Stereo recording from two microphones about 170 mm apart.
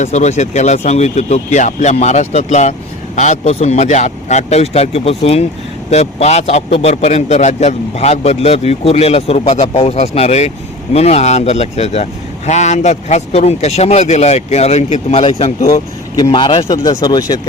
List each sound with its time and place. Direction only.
0.0 s a man's voice: 40° left (ahead or behind)
15.7 s speech: 25° left (ahead or behind)